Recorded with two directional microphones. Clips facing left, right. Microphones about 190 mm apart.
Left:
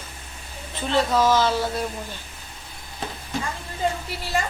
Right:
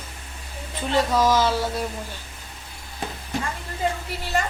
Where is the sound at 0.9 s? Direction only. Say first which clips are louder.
Even; 10° right (ahead or behind).